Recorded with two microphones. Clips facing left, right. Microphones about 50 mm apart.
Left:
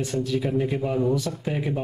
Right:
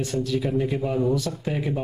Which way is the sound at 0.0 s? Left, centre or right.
Centre.